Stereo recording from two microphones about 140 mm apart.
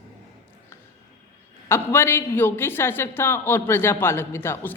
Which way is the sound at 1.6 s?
15° left (ahead or behind).